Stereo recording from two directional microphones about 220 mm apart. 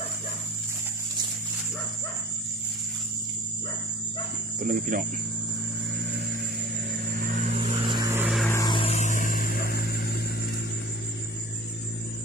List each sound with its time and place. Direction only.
4.6 s speech: 40° right (ahead or behind)
6.9 s vehicle: 40° right (ahead or behind); by 8.4 s 5° right (ahead or behind)
8.4 s vehicle: 15° left (ahead or behind); by 10.2 s 45° left (ahead or behind)